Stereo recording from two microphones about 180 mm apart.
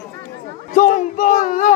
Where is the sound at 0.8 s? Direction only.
45° left (ahead or behind).